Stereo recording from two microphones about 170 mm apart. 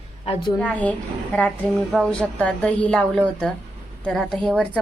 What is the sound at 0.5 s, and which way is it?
A woman's voice, 10° left (ahead or behind).